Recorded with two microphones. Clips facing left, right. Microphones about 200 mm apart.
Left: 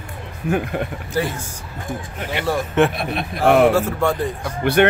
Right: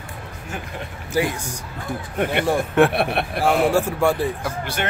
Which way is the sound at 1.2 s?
10° right (ahead or behind).